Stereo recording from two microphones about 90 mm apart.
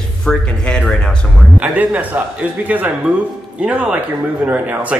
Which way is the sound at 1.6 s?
15° right (ahead or behind).